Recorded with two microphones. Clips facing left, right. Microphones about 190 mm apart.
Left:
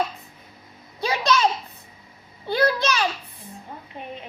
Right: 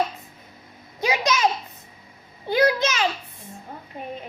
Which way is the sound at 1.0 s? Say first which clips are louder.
Left 1 dB; 15° right (ahead or behind).